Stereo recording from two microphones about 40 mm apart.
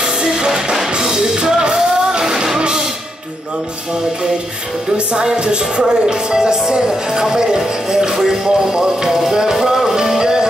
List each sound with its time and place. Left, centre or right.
0.0 s music: centre
1.3 s music: right
4.9 s music: centre